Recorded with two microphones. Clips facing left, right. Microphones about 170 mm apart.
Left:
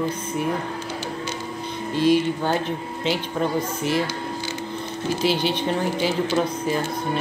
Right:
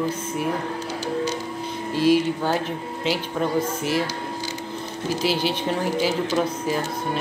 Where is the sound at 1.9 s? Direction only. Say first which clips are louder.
Even; 5° right (ahead or behind).